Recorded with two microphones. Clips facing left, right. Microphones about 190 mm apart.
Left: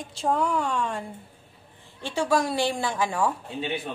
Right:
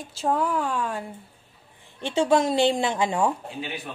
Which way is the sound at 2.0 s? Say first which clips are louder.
Right 3 dB; 20° right (ahead or behind).